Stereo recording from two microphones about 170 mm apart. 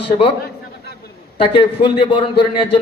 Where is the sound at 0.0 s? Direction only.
30° left (ahead or behind).